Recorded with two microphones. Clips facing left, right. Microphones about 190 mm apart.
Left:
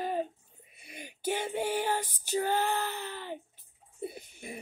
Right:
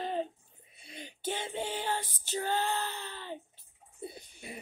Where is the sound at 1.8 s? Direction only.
45° left (ahead or behind).